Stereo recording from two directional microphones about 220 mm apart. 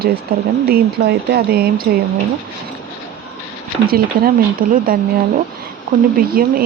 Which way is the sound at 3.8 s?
45° right (ahead or behind).